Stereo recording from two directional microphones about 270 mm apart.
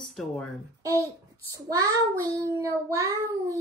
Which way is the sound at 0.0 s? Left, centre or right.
Centre.